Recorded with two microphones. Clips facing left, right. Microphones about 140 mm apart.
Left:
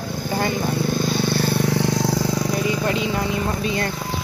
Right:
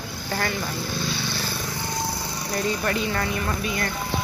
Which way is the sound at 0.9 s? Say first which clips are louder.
Left 8 dB; 50° left (ahead or behind).